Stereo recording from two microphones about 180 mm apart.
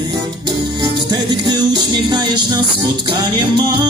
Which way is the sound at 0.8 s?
20° right (ahead or behind).